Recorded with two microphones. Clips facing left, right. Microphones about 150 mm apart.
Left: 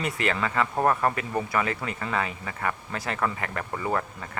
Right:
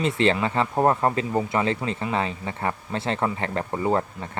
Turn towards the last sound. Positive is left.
turn(degrees=-30)  # may be behind; listen again after turning